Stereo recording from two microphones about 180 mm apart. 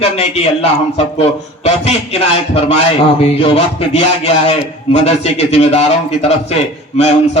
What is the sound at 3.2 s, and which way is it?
A man's voice, 35° left (ahead or behind).